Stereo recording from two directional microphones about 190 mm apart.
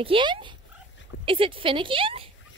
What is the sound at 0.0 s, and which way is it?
Speech, 25° right (ahead or behind).